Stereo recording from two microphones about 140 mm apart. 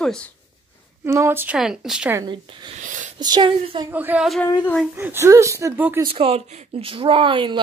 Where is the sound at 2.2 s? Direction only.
35° right (ahead or behind).